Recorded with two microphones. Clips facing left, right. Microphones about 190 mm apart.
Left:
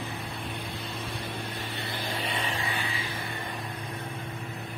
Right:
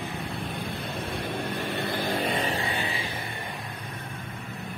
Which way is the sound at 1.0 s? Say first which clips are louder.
Right 7 dB; 55° right (ahead or behind).